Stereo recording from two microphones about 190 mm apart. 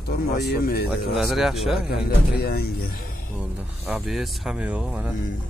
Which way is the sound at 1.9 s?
55° left (ahead or behind).